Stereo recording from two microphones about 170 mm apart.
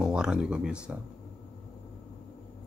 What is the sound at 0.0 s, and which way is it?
Speech, 5° right (ahead or behind).